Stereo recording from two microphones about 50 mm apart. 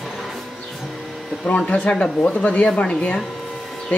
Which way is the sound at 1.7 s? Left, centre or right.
Left.